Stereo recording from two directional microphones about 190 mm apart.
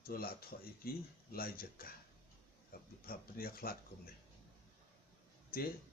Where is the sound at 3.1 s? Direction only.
50° left (ahead or behind).